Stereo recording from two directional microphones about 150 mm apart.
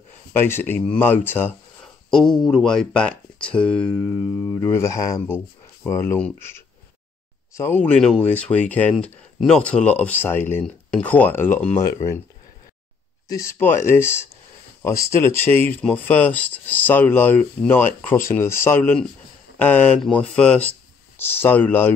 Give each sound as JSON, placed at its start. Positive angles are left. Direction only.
{"t": 0.3, "sound": "speech", "side_deg": 15}
{"t": 2.0, "sound": "speech", "side_deg": 5}
{"t": 13.3, "sound": "speech", "side_deg": 20}